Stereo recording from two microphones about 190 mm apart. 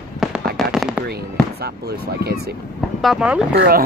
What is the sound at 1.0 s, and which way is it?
Speech, 55° right (ahead or behind).